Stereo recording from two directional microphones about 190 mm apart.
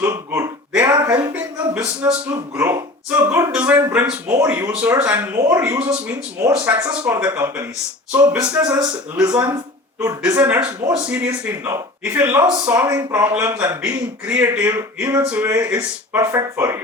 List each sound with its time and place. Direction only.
0.0 s gasp: 15° right (ahead or behind)
0.9 s speech: 15° right (ahead or behind)